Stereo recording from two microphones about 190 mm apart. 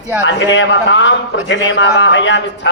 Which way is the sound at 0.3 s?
70° left (ahead or behind).